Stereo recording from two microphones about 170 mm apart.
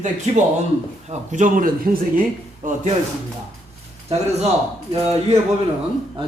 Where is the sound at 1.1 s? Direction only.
45° right (ahead or behind).